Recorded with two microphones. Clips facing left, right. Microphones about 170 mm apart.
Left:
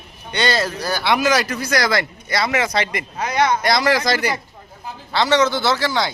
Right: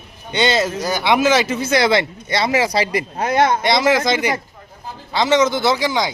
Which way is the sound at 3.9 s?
20° right (ahead or behind).